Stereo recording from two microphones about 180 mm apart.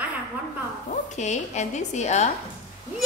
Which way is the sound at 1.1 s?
40° left (ahead or behind).